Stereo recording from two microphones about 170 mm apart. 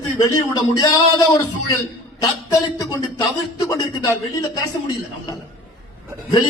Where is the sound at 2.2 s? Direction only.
20° left (ahead or behind).